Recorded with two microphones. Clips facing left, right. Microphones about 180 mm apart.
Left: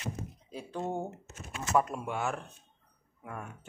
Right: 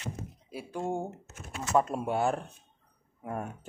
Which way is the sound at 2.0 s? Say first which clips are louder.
Right 6 dB; 35° right (ahead or behind).